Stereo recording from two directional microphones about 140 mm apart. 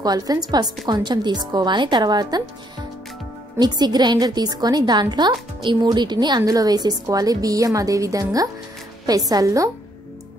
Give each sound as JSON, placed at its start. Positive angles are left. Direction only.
{"t": 0.0, "sound": "a woman's voice", "side_deg": -25}
{"t": 3.5, "sound": "a woman's voice", "side_deg": -30}